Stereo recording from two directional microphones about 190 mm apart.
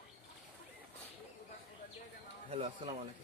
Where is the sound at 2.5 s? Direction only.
35° right (ahead or behind).